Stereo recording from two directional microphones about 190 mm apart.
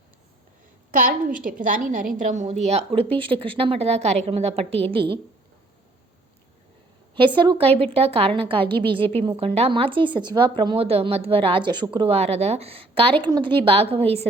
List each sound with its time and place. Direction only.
0.9 s a woman's voice: 45° right (ahead or behind); by 5.2 s 30° right (ahead or behind)
7.3 s a woman's voice: 25° right (ahead or behind)
9.0 s a woman's voice: 10° left (ahead or behind)
9.2 s a woman's voice: 30° right (ahead or behind)